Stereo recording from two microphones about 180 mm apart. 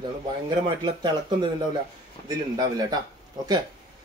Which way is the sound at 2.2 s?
20° right (ahead or behind).